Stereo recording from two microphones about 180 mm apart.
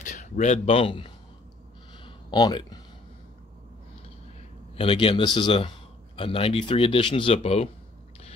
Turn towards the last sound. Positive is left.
turn(degrees=35)  # may be behind; listen again after turning